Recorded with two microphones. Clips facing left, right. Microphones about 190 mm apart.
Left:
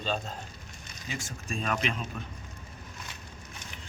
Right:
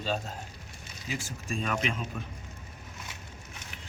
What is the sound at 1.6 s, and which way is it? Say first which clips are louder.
Speech: left 1 dB; 40° left (ahead or behind).